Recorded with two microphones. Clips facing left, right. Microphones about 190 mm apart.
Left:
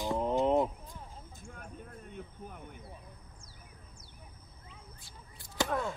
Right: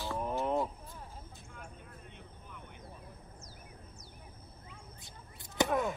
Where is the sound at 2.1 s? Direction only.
45° left (ahead or behind).